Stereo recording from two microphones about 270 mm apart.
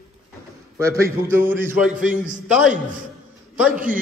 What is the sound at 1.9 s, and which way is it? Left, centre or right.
Speech, right.